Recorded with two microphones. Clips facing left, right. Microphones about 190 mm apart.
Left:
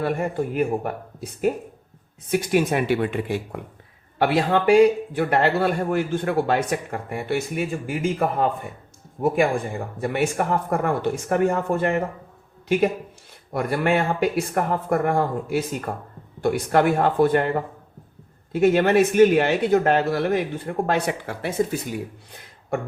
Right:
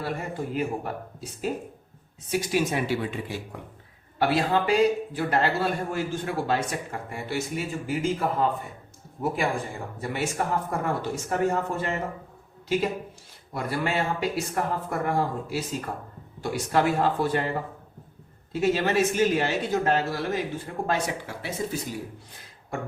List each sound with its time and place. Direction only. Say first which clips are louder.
0.0 s speech: left 7 dB; 55° left (ahead or behind)
10.0 s a man's voice: left 6 dB; 55° left (ahead or behind)
16.4 s speech: left 5 dB; 55° left (ahead or behind)